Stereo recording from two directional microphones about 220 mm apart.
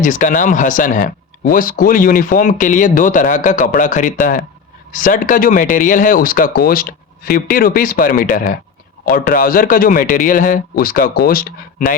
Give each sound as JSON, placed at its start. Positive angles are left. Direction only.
{"t": 0.0, "sound": "speech", "side_deg": 35}